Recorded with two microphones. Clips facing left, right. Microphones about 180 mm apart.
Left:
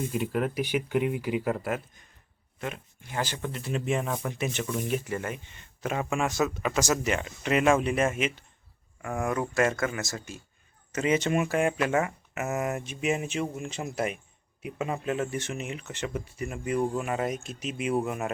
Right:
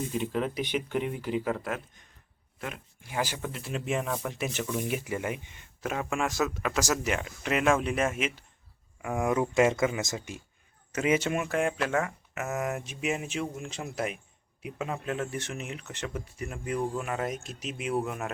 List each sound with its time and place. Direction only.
0.1 s speech: 5° left (ahead or behind); by 5.6 s 15° right (ahead or behind)
5.8 s speech: centre (ahead or behind); by 10.4 s 20° right (ahead or behind)
10.9 s speech: 5° right (ahead or behind)